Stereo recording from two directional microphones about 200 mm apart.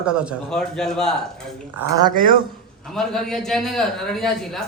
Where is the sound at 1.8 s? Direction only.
15° right (ahead or behind).